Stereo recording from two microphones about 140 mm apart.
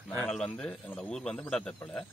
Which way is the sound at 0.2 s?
5° left (ahead or behind).